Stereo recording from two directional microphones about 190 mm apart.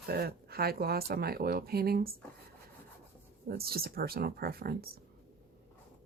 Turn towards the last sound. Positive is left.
turn(degrees=-55)  # may be behind; listen again after turning